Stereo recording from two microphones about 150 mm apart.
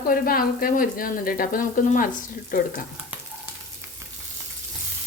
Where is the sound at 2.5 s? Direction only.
65° left (ahead or behind).